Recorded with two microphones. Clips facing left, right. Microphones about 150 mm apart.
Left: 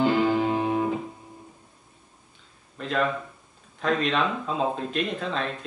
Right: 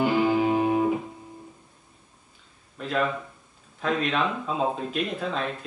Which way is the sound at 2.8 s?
Centre (ahead or behind).